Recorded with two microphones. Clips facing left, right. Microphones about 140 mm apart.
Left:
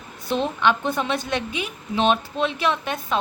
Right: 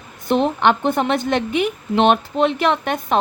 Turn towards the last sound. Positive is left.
turn(degrees=-55)  # may be behind; listen again after turning